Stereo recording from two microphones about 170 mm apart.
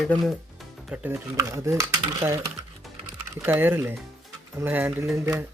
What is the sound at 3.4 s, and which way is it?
Speech, 10° right (ahead or behind).